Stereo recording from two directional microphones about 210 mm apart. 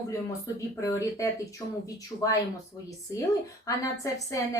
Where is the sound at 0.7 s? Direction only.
15° left (ahead or behind).